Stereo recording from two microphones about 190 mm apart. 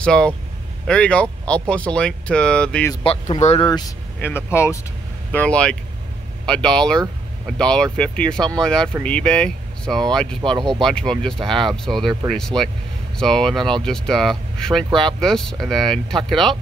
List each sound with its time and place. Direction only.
0.0 s speech: 5° left (ahead or behind)
2.9 s speech: 30° left (ahead or behind)
4.2 s speech: 10° left (ahead or behind)